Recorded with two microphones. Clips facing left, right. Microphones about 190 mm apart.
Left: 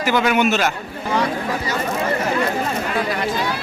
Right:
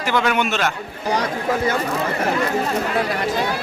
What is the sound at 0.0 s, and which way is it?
Speech, 5° left (ahead or behind).